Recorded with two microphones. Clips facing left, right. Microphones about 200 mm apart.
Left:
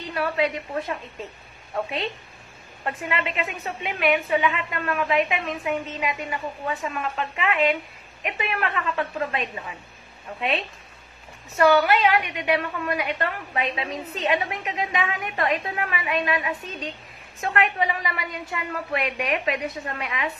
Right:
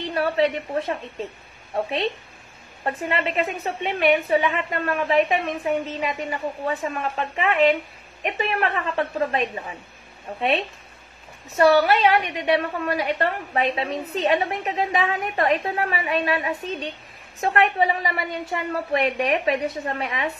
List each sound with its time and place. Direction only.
0.0 s a woman's voice: 30° right (ahead or behind)
11.5 s a woman's voice: 30° right (ahead or behind)